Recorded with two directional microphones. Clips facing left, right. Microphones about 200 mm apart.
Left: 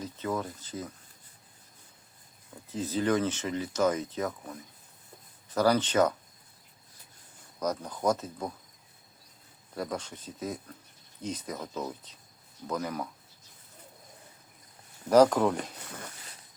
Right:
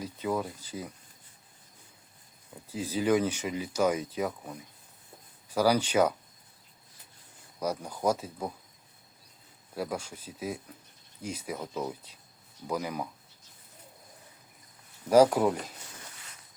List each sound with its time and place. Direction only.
0.0 s speech: 10° right (ahead or behind)
2.6 s speech: 10° right (ahead or behind)
7.6 s speech: 10° right (ahead or behind)
9.7 s speech: 5° right (ahead or behind)
15.1 s speech: 10° right (ahead or behind)
15.8 s a sound: 60° left (ahead or behind)